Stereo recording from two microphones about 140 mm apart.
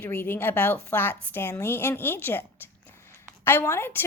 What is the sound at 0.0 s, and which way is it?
Speech, 15° left (ahead or behind).